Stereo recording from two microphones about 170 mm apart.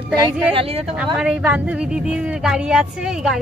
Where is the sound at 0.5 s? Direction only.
35° right (ahead or behind).